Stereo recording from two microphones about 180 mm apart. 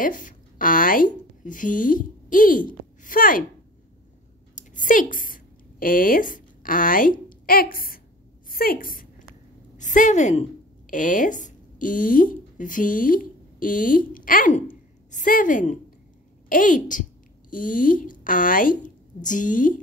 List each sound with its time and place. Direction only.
0.0 s speech: 45° left (ahead or behind)
4.6 s a woman's voice: 45° left (ahead or behind)